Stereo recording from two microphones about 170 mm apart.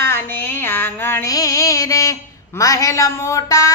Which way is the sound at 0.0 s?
10° left (ahead or behind).